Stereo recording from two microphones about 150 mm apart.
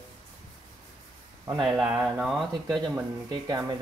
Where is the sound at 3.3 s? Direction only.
25° right (ahead or behind).